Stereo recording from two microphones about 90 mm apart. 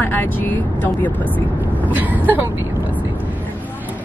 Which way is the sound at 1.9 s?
20° right (ahead or behind).